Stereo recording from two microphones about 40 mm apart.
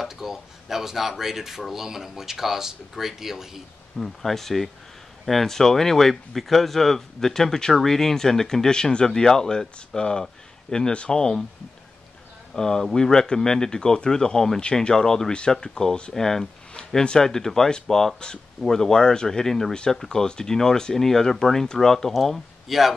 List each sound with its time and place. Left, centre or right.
0.0 s speech: centre
4.2 s speech: centre
12.5 s speech: centre
16.7 s speech: left
22.1 s speech: centre